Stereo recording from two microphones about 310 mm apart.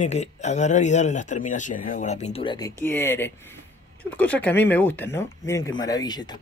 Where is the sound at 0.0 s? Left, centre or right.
Left.